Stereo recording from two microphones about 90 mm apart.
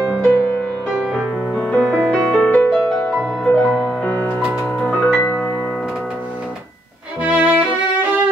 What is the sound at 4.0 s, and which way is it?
Music, 20° left (ahead or behind).